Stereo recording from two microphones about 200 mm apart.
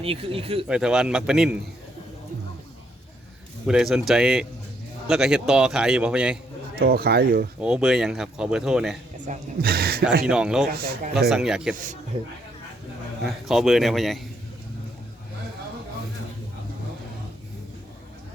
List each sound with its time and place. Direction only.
0.0 s speech: 30° right (ahead or behind)
0.7 s a man's voice: 5° right (ahead or behind)
3.7 s a man's voice: 5° right (ahead or behind)
6.7 s speech: 50° right (ahead or behind)
7.6 s a man's voice: 5° right (ahead or behind)
9.2 s speech: 45° right (ahead or behind)
10.2 s a man's voice: 5° right (ahead or behind)
10.7 s speech: 50° right (ahead or behind)
11.3 s a man's voice: centre (ahead or behind)
13.2 s a man's voice: centre (ahead or behind)